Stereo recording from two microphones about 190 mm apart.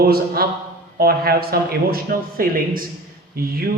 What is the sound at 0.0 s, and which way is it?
A man's voice, 55° right (ahead or behind).